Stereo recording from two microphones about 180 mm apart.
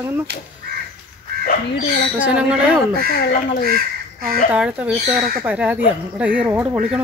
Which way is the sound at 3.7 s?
55° right (ahead or behind).